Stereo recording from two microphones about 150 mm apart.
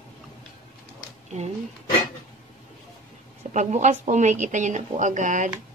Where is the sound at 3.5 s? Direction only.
55° right (ahead or behind).